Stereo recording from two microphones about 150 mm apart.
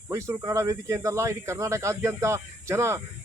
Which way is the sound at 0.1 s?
20° right (ahead or behind).